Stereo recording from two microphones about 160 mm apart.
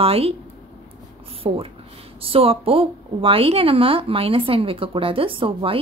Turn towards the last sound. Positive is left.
turn(degrees=-35)  # may be behind; listen again after turning